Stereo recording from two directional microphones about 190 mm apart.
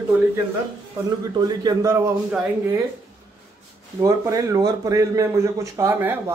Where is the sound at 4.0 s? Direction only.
20° right (ahead or behind).